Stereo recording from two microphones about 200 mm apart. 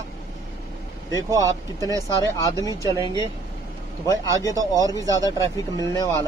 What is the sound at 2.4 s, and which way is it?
Speech, 20° left (ahead or behind).